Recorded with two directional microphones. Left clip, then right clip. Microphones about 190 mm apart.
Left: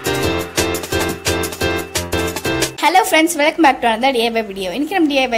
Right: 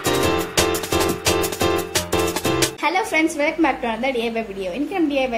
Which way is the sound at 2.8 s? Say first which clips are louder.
Left 9 dB; 50° left (ahead or behind).